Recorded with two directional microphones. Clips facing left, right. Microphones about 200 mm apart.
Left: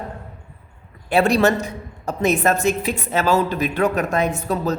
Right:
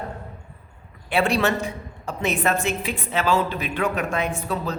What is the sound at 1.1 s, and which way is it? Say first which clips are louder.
A man's voice: left 5 dB; 40° left (ahead or behind).